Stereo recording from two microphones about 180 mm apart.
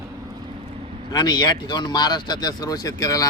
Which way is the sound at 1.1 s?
20° left (ahead or behind).